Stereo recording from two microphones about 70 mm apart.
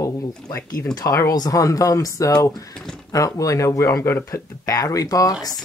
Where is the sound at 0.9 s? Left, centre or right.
Left.